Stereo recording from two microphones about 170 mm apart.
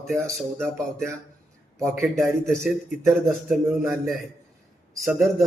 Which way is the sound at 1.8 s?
15° right (ahead or behind).